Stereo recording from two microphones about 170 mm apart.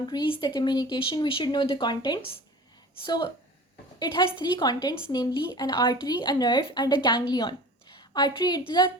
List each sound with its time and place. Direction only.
0.1 s a woman's voice: 30° left (ahead or behind)
4.0 s a woman's voice: 30° left (ahead or behind)